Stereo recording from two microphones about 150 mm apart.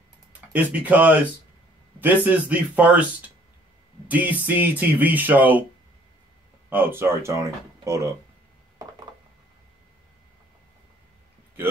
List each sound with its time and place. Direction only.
0.5 s speech: 10° right (ahead or behind)
6.7 s speech: 15° right (ahead or behind)